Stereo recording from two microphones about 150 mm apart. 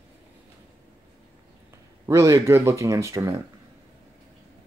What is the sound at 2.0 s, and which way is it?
Speech, 20° right (ahead or behind).